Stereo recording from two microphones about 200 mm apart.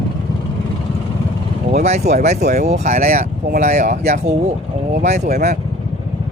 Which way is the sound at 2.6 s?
35° right (ahead or behind).